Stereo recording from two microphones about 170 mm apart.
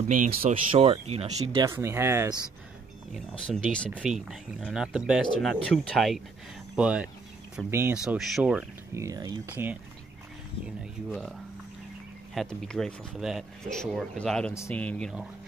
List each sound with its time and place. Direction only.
0.1 s speech: 55° right (ahead or behind)
0.7 s speech: 35° right (ahead or behind)
1.6 s speech: 15° right (ahead or behind)
3.1 s speech: 5° left (ahead or behind)
8.9 s speech: 20° right (ahead or behind)
9.6 s speech: 15° right (ahead or behind)
12.4 s speech: 5° left (ahead or behind)